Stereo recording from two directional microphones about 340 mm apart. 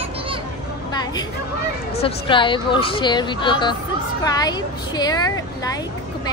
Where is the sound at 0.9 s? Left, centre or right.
Centre.